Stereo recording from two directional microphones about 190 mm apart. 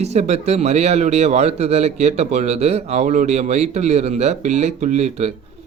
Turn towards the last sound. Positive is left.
turn(degrees=-35)  # may be behind; listen again after turning